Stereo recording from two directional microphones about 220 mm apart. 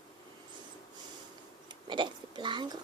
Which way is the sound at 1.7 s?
20° right (ahead or behind).